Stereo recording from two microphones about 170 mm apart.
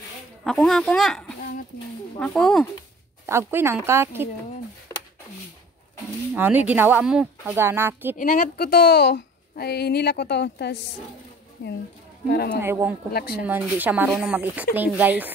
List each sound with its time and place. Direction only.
0.4 s speech: 5° left (ahead or behind)
3.3 s speech: 15° right (ahead or behind)
6.3 s speech: 10° right (ahead or behind)
8.2 s a woman's voice: 50° left (ahead or behind); by 10.8 s 85° left
11.6 s speech: 60° left (ahead or behind)
12.6 s speech: 15° right (ahead or behind)